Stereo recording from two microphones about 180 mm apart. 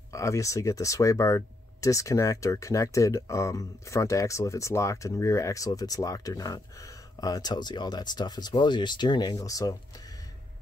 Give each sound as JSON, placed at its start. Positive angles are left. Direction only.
{"t": 0.1, "sound": "speech", "side_deg": 15}